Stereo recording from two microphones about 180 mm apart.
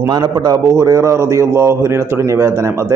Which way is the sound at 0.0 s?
25° right (ahead or behind).